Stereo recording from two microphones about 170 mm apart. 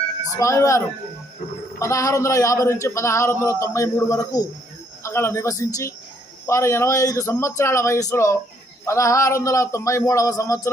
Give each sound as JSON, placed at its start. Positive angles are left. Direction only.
{"t": 0.3, "sound": "speech", "side_deg": 20}
{"t": 1.8, "sound": "speech", "side_deg": 20}